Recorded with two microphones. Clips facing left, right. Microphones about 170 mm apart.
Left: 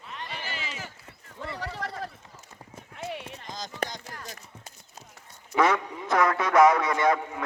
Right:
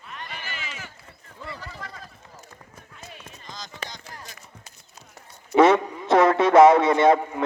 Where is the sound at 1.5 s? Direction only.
75° left (ahead or behind).